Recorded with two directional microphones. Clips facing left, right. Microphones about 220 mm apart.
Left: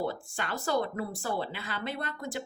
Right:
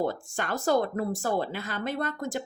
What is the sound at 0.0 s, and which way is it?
Speech, 45° right (ahead or behind).